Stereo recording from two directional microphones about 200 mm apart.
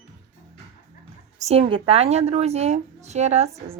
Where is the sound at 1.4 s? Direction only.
30° right (ahead or behind).